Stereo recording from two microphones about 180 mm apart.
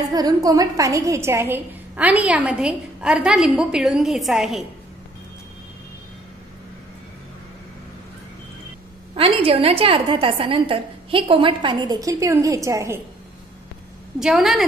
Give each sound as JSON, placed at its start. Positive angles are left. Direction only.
{"t": 0.1, "sound": "a woman's voice", "side_deg": -20}
{"t": 9.1, "sound": "a woman's voice", "side_deg": -30}
{"t": 14.2, "sound": "a woman's voice", "side_deg": 0}